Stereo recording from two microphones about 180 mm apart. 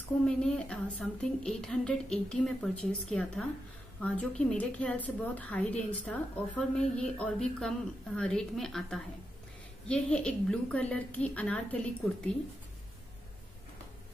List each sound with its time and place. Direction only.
0.2 s a woman's voice: 5° left (ahead or behind)